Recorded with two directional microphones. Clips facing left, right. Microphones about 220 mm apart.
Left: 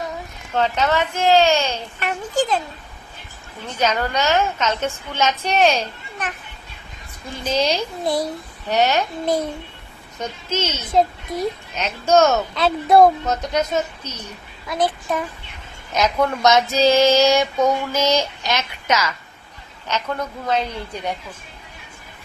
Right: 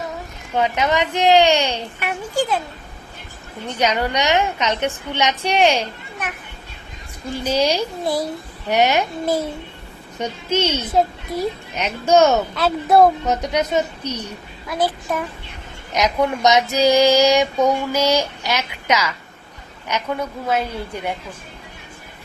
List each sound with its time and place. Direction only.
0.5 s child singing: 15° right (ahead or behind)
3.8 s child singing: 15° right (ahead or behind)
7.4 s child singing: 10° right (ahead or behind)
8.0 s a child's voice: centre (ahead or behind)
8.7 s child singing: 10° right (ahead or behind)